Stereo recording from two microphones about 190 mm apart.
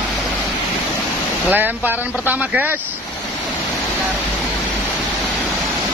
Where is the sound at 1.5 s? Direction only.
10° right (ahead or behind).